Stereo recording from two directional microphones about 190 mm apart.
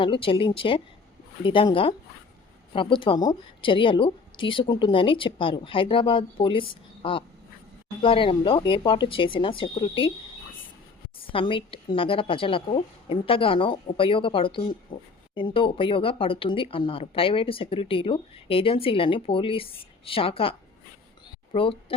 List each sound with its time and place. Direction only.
0.0 s a woman's voice: 25° left (ahead or behind)
11.3 s a woman's voice: 30° left (ahead or behind)